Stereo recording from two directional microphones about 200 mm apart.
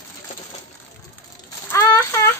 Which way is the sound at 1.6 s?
10° left (ahead or behind).